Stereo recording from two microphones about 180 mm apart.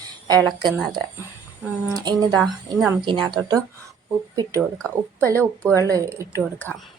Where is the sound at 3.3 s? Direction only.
25° right (ahead or behind).